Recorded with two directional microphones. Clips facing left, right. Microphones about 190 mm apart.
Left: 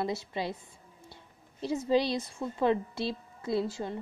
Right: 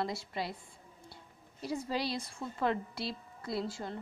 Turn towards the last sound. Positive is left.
turn(degrees=20)  # may be behind; listen again after turning